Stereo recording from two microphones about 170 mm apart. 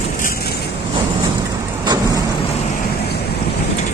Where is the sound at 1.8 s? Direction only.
20° right (ahead or behind).